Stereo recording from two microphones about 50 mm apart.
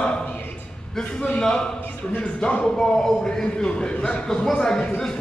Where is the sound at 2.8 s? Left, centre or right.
Centre.